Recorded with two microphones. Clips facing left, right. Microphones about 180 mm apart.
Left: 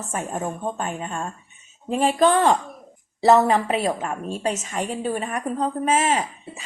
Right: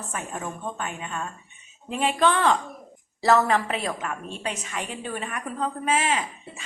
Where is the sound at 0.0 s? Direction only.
40° left (ahead or behind).